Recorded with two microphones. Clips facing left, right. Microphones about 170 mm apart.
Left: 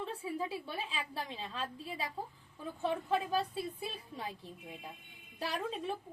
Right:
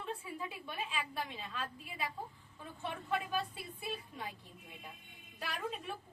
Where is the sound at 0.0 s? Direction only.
30° left (ahead or behind).